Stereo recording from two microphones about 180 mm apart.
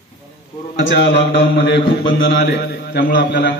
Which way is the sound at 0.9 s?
75° left (ahead or behind).